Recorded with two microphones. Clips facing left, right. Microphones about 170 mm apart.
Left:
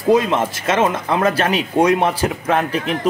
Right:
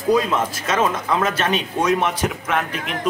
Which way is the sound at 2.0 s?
35° left (ahead or behind).